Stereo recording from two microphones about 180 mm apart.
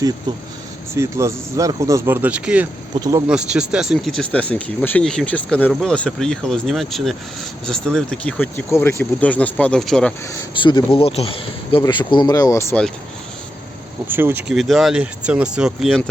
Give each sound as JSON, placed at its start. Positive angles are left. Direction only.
{"t": 0.3, "sound": "speech", "side_deg": -25}
{"t": 3.0, "sound": "speech", "side_deg": -20}
{"t": 3.2, "sound": "speech", "side_deg": -5}
{"t": 10.5, "sound": "speech", "side_deg": 25}
{"t": 14.1, "sound": "speech", "side_deg": -10}